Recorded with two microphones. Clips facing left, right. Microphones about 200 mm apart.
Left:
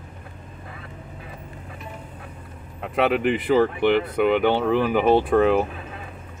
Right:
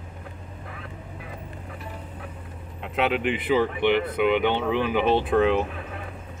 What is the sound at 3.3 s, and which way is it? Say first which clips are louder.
Speech: left 4 dB; 45° left (ahead or behind).